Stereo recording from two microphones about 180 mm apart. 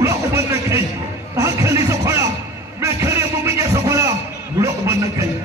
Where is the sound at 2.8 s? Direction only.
15° right (ahead or behind).